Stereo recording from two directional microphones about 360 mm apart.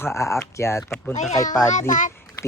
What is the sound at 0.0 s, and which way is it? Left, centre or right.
A child's voice, centre.